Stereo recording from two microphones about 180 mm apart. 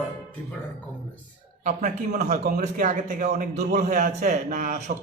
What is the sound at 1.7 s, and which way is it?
A man's voice, 40° right (ahead or behind).